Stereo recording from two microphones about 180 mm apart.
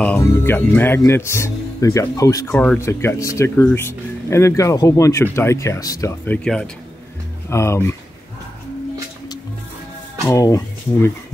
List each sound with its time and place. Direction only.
0.0 s speech: 10° left (ahead or behind)
7.4 s speech: 15° left (ahead or behind)
10.2 s speech: 20° left (ahead or behind)